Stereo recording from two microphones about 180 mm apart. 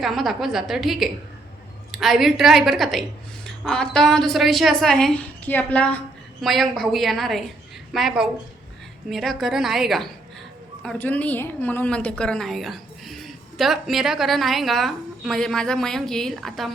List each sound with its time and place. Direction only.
0.0 s a woman's voice: centre (ahead or behind)